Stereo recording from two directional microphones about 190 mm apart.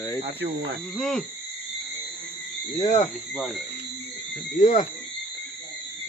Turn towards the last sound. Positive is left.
turn(degrees=40)  # may be behind; listen again after turning